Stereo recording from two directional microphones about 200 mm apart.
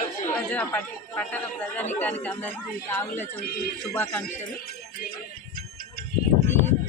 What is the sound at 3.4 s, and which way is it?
Speech, 50° left (ahead or behind).